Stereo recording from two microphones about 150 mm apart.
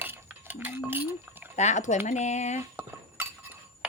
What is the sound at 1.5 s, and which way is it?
Liquid, 50° left (ahead or behind).